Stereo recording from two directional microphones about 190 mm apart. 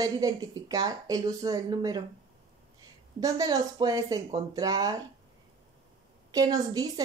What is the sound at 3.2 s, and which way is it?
Speech, 20° right (ahead or behind).